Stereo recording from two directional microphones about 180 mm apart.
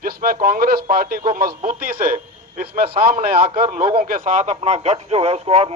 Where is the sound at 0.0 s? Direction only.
50° right (ahead or behind).